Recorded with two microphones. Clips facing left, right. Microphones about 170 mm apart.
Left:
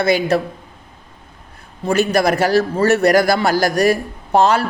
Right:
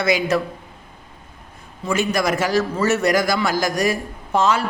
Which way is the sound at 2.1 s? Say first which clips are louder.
Left 4 dB; 60° left (ahead or behind).